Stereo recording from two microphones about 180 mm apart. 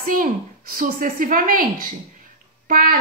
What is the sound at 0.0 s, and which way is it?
A woman's voice, 50° right (ahead or behind).